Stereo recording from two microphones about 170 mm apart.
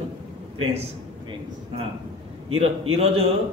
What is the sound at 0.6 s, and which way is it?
Speech, 35° right (ahead or behind).